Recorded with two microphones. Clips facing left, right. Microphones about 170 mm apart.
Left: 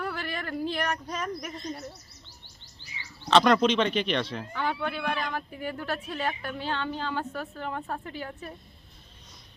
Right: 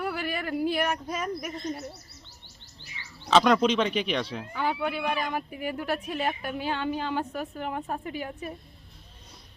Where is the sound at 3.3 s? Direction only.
5° right (ahead or behind).